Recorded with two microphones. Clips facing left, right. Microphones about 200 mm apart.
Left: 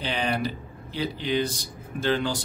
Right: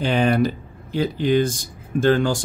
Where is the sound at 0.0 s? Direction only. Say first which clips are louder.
Right 9 dB; 50° right (ahead or behind).